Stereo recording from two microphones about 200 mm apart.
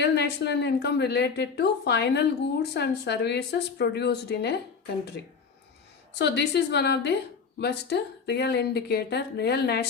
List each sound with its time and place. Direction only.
0.0 s speech: 60° left (ahead or behind)
6.1 s speech: 55° left (ahead or behind)